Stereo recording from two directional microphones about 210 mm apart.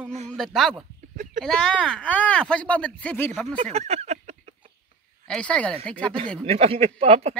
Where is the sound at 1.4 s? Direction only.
5° left (ahead or behind).